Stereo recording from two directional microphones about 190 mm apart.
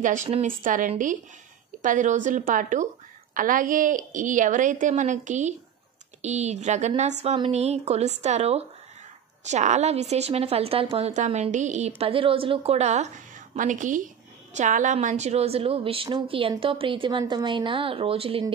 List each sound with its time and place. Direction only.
0.0 s a woman's voice: 40° right (ahead or behind)